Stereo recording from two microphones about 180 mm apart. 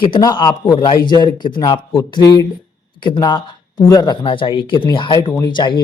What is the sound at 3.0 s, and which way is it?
A man's voice, 25° left (ahead or behind).